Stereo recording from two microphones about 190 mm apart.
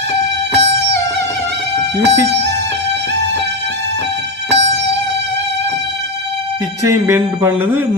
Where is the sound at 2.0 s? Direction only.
65° right (ahead or behind).